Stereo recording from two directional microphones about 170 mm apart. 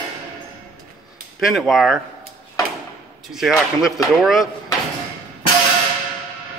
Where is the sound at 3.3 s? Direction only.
Centre (ahead or behind).